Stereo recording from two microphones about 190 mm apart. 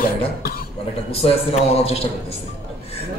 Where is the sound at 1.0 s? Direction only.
30° left (ahead or behind).